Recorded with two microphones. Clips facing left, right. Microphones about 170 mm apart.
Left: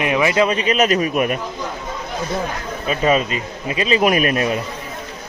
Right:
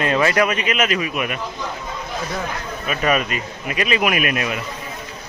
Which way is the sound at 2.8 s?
25° left (ahead or behind).